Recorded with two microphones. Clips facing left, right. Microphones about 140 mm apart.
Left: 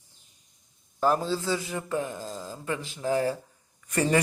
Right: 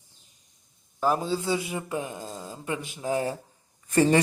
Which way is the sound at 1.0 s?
10° right (ahead or behind).